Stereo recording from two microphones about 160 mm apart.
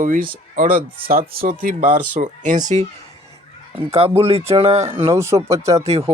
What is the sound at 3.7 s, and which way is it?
Speech, 40° right (ahead or behind).